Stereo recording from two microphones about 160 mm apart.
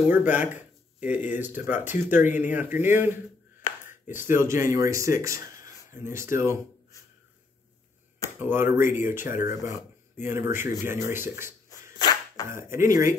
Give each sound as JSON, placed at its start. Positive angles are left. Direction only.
{"t": 0.1, "sound": "speech", "side_deg": -10}
{"t": 8.4, "sound": "speech", "side_deg": -15}